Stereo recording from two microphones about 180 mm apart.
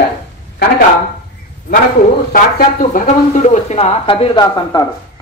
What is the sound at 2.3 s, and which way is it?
Speech, 50° left (ahead or behind).